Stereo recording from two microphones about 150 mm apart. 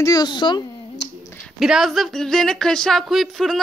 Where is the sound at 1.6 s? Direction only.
Centre (ahead or behind).